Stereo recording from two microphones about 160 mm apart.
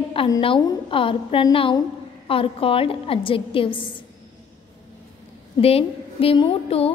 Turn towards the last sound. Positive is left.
turn(degrees=35)  # may be behind; listen again after turning